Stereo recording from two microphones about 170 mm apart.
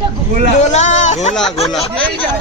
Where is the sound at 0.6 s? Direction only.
40° left (ahead or behind).